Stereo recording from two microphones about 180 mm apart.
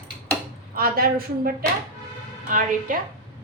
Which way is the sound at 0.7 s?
55° right (ahead or behind).